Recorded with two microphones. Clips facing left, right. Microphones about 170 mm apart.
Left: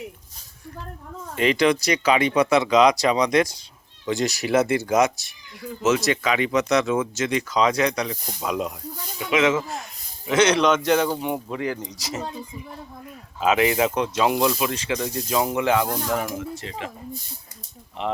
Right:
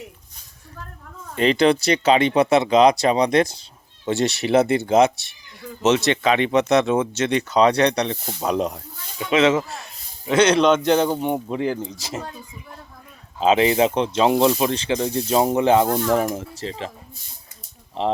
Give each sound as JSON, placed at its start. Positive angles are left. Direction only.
{"t": 1.4, "sound": "speech", "side_deg": -30}
{"t": 11.8, "sound": "speech", "side_deg": 15}
{"t": 13.4, "sound": "speech", "side_deg": -25}
{"t": 18.0, "sound": "speech", "side_deg": -30}